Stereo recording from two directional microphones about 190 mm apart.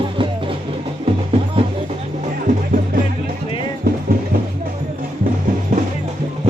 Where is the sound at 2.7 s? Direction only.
45° right (ahead or behind).